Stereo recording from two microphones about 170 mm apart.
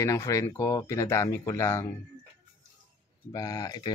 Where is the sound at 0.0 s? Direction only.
20° left (ahead or behind).